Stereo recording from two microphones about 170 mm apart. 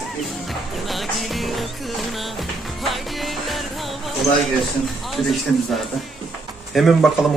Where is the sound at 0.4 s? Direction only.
Centre (ahead or behind).